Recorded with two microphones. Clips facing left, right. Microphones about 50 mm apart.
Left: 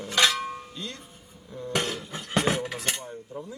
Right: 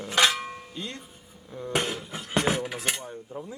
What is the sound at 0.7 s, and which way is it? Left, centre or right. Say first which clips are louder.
Speech: right 1 dB; right.